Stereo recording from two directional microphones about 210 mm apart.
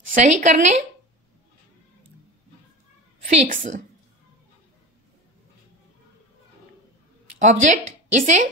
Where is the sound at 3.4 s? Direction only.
35° right (ahead or behind).